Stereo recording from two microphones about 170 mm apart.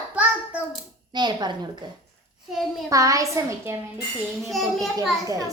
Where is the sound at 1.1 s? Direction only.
25° right (ahead or behind).